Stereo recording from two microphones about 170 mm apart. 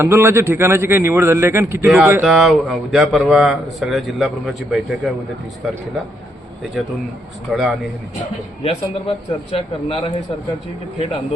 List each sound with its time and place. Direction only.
0.0 s a man's voice: 15° right (ahead or behind)
7.5 s speech: 5° right (ahead or behind)
8.6 s a man's voice: 35° left (ahead or behind)